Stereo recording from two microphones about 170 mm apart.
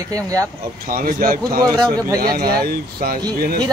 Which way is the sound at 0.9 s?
55° right (ahead or behind).